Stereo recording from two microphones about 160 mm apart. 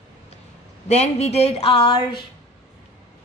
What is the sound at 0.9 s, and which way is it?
A woman's voice, 40° left (ahead or behind).